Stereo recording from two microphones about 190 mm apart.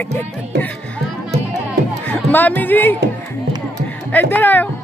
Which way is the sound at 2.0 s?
10° left (ahead or behind).